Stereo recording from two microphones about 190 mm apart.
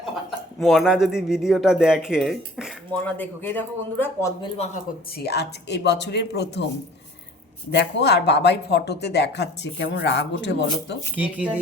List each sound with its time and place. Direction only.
0.0 s speech: centre (ahead or behind)
3.2 s a man's voice: 10° left (ahead or behind)
4.4 s speech: 35° left (ahead or behind)
5.1 s speech: 60° left (ahead or behind)
7.7 s speech: 65° left (ahead or behind)
11.2 s speech: 5° right (ahead or behind)